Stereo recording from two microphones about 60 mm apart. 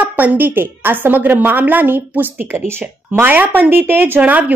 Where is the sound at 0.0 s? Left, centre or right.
Right.